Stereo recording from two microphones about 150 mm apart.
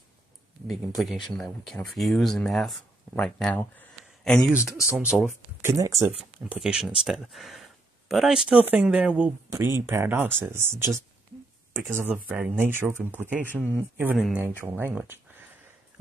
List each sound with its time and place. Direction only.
0.7 s speech: centre (ahead or behind)
4.5 s speech: 5° right (ahead or behind)
5.6 s speech: 20° right (ahead or behind)
6.5 s speech: 5° right (ahead or behind)
14.1 s speech: centre (ahead or behind)
14.6 s speech: 15° right (ahead or behind)